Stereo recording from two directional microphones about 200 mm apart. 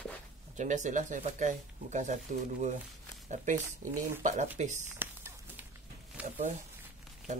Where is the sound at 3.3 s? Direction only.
40° right (ahead or behind).